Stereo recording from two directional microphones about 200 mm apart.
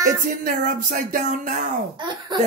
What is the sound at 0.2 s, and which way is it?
Speech, 45° right (ahead or behind).